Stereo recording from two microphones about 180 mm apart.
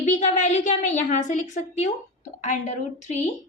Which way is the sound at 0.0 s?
40° left (ahead or behind).